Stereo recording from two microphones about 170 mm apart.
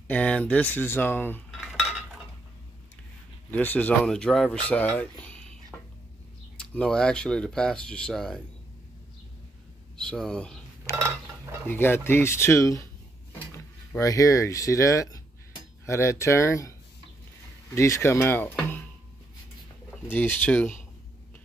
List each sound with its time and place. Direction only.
0.1 s speech: 10° left (ahead or behind)
1.5 s cutlery: centre (ahead or behind)
3.5 s speech: 10° left (ahead or behind)
6.5 s speech: 5° left (ahead or behind)
9.9 s speech: 5° left (ahead or behind)
11.6 s speech: 10° left (ahead or behind)
13.9 s speech: 20° left (ahead or behind)
17.7 s speech: 15° left (ahead or behind)
20.1 s speech: 10° left (ahead or behind)